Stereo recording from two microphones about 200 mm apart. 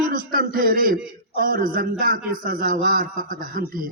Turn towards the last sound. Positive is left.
turn(degrees=-45)  # may be behind; listen again after turning